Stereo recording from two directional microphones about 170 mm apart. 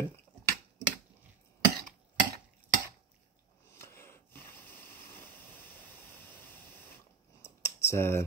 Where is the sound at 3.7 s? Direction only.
15° left (ahead or behind).